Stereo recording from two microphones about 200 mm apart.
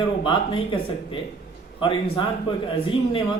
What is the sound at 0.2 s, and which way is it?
A man's voice, 25° left (ahead or behind).